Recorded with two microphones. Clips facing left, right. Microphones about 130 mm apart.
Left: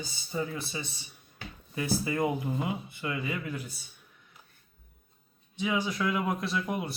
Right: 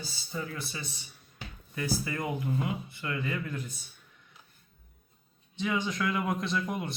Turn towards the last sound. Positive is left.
turn(degrees=5)  # may be behind; listen again after turning